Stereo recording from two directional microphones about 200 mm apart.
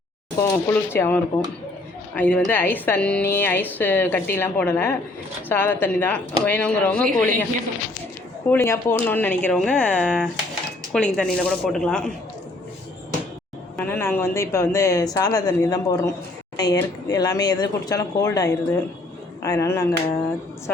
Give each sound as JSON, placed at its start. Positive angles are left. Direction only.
{"t": 0.4, "sound": "speech", "side_deg": 10}
{"t": 8.4, "sound": "speech", "side_deg": 10}
{"t": 13.7, "sound": "speech", "side_deg": 10}